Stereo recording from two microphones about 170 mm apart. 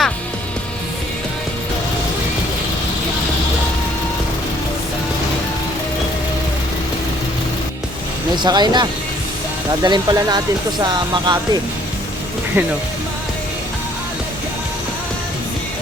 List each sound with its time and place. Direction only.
8.4 s speech: 25° right (ahead or behind)
12.6 s speech: 15° right (ahead or behind)